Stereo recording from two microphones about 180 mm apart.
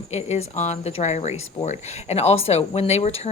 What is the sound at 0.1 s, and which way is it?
A woman's voice, 35° left (ahead or behind).